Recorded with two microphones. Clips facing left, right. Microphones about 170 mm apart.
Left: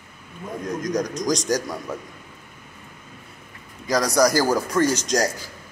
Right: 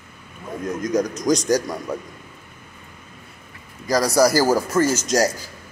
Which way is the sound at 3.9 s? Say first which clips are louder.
Right 2 dB; 5° right (ahead or behind).